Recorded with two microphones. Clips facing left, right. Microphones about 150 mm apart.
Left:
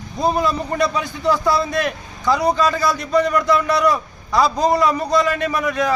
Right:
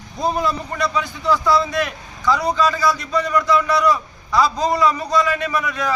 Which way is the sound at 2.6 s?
55° left (ahead or behind).